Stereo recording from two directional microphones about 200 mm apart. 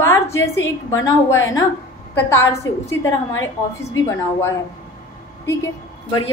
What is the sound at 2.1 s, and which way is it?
Speech, 15° left (ahead or behind).